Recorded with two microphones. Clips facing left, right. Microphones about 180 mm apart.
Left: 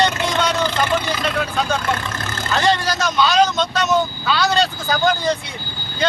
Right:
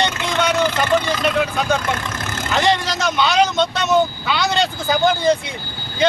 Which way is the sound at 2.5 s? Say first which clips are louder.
Even; 20° right (ahead or behind).